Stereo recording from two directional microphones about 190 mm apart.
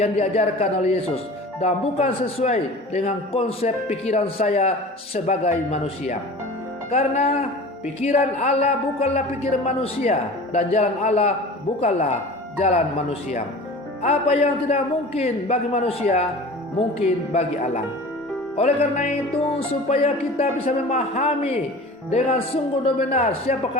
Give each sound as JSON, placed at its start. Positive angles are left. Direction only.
{"t": 0.0, "sound": "a man's voice", "side_deg": 35}
{"t": 17.3, "sound": "a man's voice", "side_deg": 35}